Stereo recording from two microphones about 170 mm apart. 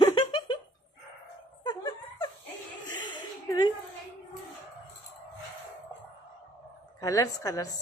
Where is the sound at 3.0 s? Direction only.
25° left (ahead or behind).